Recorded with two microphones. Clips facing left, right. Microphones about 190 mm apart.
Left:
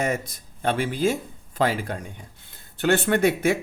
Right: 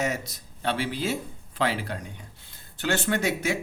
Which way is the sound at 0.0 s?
50° left (ahead or behind).